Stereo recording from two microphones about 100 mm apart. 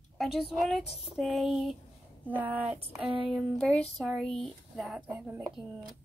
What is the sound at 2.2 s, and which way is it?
Speech, 15° right (ahead or behind).